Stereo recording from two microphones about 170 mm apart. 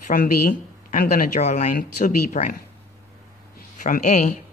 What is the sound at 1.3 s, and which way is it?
Speech, 45° left (ahead or behind).